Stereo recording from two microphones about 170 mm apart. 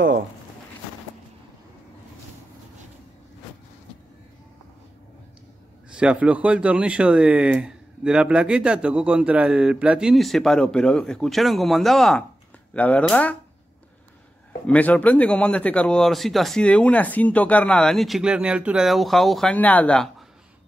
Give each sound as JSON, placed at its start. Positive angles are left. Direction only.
{"t": 5.9, "sound": "speech", "side_deg": -5}
{"t": 14.7, "sound": "speech", "side_deg": 10}